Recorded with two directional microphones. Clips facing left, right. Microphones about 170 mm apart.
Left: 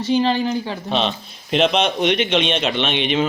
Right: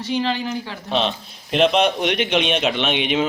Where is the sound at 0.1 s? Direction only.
30° left (ahead or behind).